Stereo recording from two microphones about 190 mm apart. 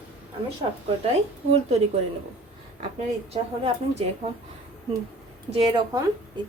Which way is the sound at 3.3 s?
30° right (ahead or behind).